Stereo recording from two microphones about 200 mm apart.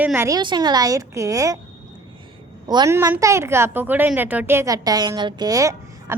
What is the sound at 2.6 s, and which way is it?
A woman's voice, 20° right (ahead or behind).